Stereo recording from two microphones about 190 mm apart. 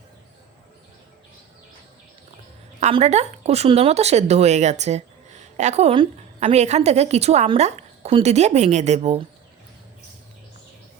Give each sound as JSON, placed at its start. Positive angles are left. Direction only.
{"t": 2.8, "sound": "speech", "side_deg": -35}